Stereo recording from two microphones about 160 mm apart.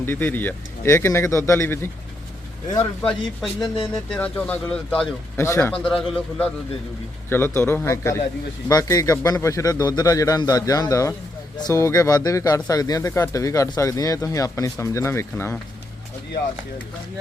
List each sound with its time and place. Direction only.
0.0 s speech: 15° left (ahead or behind)
3.0 s speech: 5° left (ahead or behind)
6.0 s speech: 5° left (ahead or behind)
7.3 s speech: 15° left (ahead or behind)